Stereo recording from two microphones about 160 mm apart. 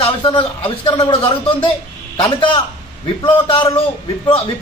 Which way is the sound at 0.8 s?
30° left (ahead or behind).